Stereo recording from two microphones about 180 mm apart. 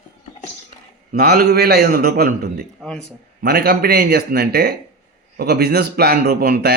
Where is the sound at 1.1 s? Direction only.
60° right (ahead or behind).